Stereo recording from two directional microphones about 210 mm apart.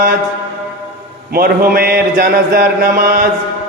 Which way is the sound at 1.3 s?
45° right (ahead or behind).